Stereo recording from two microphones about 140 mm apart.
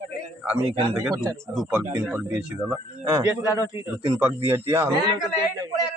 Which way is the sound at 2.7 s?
20° right (ahead or behind).